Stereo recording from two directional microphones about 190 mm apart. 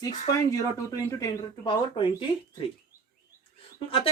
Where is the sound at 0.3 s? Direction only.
15° left (ahead or behind).